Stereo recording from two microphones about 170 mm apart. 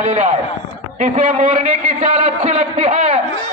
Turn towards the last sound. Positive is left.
turn(degrees=-40)  # may be behind; listen again after turning